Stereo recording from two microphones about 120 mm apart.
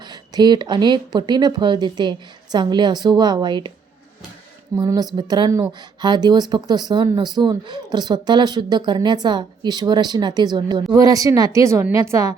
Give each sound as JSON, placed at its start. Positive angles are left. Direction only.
{"t": 0.0, "sound": "speech", "side_deg": -35}
{"t": 5.1, "sound": "speech", "side_deg": -35}